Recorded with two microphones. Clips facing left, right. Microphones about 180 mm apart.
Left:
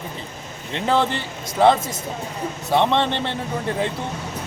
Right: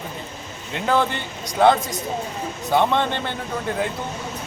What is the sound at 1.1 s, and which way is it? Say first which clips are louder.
Speech: left 1 dB; centre (ahead or behind).